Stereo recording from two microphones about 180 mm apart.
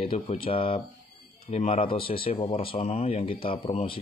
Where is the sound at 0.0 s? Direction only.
30° left (ahead or behind).